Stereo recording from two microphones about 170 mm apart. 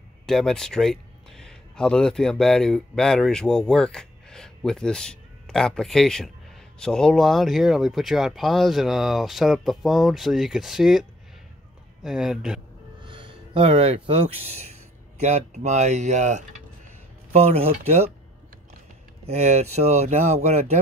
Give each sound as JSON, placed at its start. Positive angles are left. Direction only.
{"t": 0.3, "sound": "speech", "side_deg": 5}
{"t": 13.0, "sound": "speech", "side_deg": -30}
{"t": 19.2, "sound": "speech", "side_deg": -40}